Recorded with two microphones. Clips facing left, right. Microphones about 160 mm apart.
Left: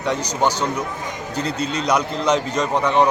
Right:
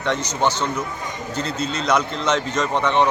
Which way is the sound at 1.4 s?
10° left (ahead or behind).